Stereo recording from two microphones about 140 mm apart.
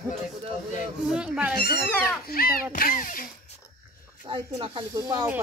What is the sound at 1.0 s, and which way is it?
Speech, 5° right (ahead or behind).